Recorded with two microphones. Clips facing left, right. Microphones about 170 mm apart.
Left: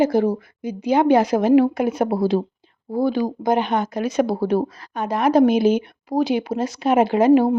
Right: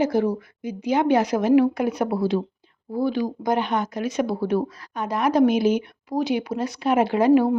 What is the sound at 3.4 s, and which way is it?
A woman's voice, 20° left (ahead or behind).